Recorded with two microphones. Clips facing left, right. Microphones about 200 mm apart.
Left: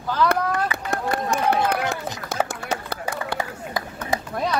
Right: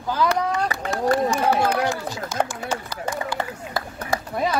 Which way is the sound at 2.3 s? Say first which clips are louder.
Even; 60° left (ahead or behind).